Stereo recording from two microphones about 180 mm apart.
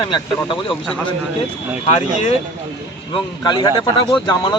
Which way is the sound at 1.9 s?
35° left (ahead or behind).